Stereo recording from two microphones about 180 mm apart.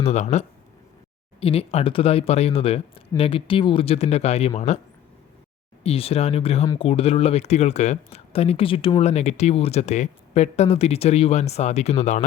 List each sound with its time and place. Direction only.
0.0 s speech: 40° left (ahead or behind)
5.8 s speech: 35° left (ahead or behind)